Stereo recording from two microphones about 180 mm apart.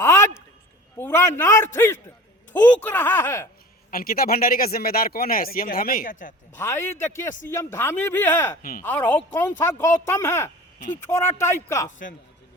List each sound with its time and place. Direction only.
0.0 s a sound: 15° left (ahead or behind)
0.9 s speech: 15° left (ahead or behind)
3.9 s speech: 55° left (ahead or behind)
6.6 s speech: 15° left (ahead or behind)